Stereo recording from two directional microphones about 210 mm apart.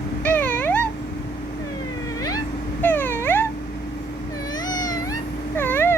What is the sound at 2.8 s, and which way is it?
Dog, 10° left (ahead or behind).